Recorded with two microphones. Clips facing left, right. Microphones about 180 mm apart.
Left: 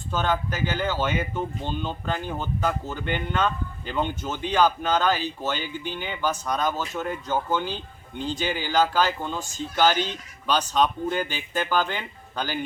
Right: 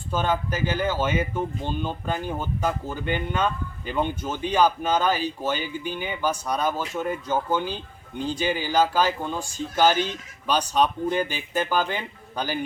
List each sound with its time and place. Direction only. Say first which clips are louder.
0.1 s speech: right 1 dB; 10° right (ahead or behind)